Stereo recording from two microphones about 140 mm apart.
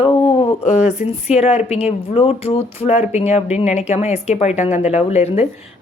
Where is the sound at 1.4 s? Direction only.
50° left (ahead or behind).